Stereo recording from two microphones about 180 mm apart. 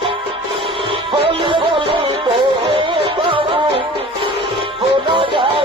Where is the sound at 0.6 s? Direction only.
30° right (ahead or behind).